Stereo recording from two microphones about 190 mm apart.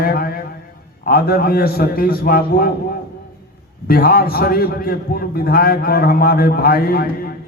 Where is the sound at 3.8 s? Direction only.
50° left (ahead or behind).